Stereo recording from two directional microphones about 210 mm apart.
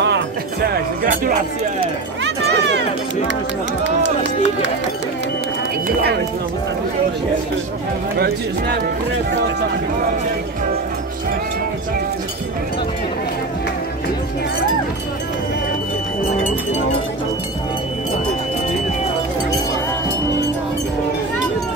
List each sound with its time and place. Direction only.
0.0 s music: 50° right (ahead or behind)
2.2 s a sound: 55° right (ahead or behind)
3.8 s speech: 55° right (ahead or behind)